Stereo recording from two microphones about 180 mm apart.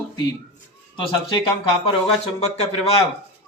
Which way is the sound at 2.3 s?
35° left (ahead or behind).